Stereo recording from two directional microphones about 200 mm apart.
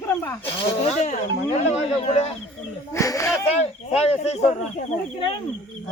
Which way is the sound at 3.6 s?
30° left (ahead or behind).